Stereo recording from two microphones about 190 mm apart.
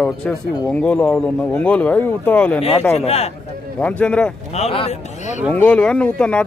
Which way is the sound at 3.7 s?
5° left (ahead or behind).